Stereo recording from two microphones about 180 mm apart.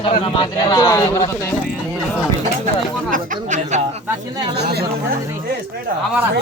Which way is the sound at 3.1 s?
45° right (ahead or behind).